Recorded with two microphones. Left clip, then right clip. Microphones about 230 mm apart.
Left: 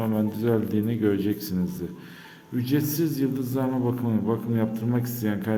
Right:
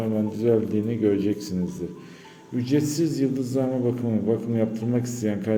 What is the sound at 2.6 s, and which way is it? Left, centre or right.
A man's voice, centre.